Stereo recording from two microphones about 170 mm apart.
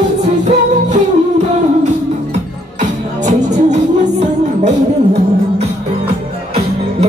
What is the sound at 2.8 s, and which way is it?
Music, 45° right (ahead or behind).